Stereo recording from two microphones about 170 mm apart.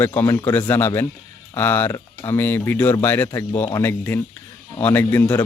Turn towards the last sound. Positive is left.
turn(degrees=10)  # may be behind; listen again after turning